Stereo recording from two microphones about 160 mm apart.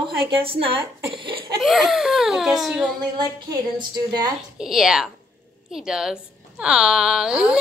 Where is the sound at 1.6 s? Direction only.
Centre (ahead or behind).